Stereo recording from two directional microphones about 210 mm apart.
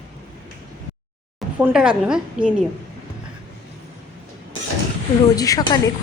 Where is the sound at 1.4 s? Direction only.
5° right (ahead or behind).